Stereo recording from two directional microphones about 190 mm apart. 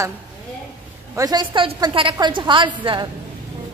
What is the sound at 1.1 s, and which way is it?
A woman's voice, 20° right (ahead or behind).